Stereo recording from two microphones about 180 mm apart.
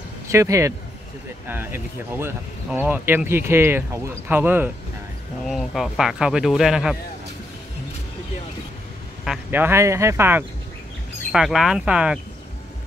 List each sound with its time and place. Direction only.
0.3 s speech: 15° right (ahead or behind)
5.4 s speech: centre (ahead or behind)
9.2 s speech: 5° right (ahead or behind)
11.3 s speech: centre (ahead or behind)